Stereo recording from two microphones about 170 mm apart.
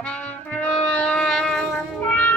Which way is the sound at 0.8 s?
10° left (ahead or behind).